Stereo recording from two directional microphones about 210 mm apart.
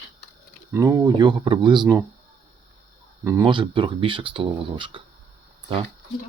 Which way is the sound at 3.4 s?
25° right (ahead or behind).